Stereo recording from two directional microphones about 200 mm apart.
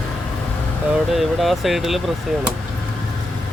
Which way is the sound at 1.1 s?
Centre (ahead or behind).